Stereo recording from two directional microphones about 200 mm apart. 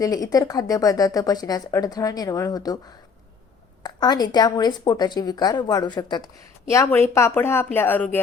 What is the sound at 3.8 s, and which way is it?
A woman's voice, 20° left (ahead or behind).